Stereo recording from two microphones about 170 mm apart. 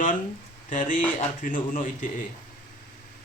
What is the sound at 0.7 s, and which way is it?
Speech, 50° left (ahead or behind).